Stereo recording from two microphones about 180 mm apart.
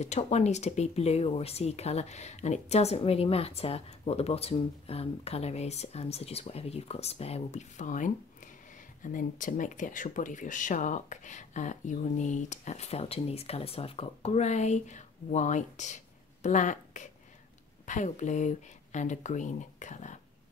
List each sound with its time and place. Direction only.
0.0 s speech: 40° left (ahead or behind)